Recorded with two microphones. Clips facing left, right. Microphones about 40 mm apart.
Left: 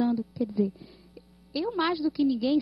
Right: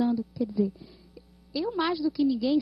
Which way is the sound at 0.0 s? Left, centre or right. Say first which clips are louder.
Even; centre.